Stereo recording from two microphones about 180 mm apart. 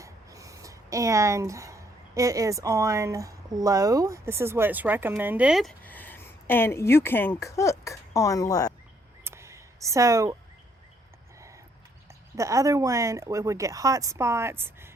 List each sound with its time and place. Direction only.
0.0 s speech: 20° right (ahead or behind); by 5.7 s 5° right (ahead or behind)
5.8 s speech: 10° left (ahead or behind)
9.2 s a sound: 15° right (ahead or behind)
12.4 s speech: 15° right (ahead or behind)